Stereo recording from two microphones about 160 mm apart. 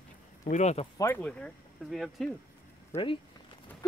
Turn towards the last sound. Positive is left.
turn(degrees=15)  # may be behind; listen again after turning